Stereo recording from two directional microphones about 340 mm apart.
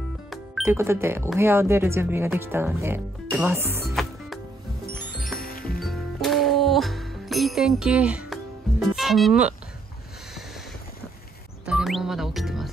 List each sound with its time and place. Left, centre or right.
0.3 s speech: centre
5.4 s music: left
5.8 s music: centre
11.6 s music: centre